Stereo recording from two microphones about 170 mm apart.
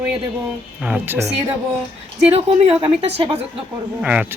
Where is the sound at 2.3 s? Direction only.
35° right (ahead or behind).